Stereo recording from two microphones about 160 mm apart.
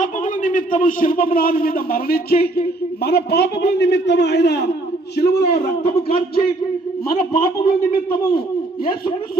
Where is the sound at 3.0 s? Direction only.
90° left.